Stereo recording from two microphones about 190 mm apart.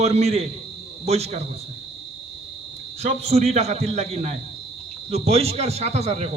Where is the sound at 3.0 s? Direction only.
35° right (ahead or behind).